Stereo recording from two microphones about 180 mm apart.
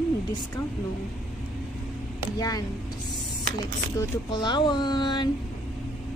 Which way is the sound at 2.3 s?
20° left (ahead or behind).